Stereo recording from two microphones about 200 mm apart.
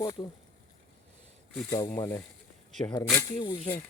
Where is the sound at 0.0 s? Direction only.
20° left (ahead or behind).